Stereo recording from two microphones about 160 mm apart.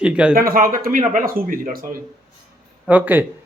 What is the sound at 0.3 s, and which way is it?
Speech, 65° right (ahead or behind).